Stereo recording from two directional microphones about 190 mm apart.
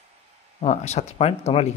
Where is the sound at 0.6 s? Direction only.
35° left (ahead or behind).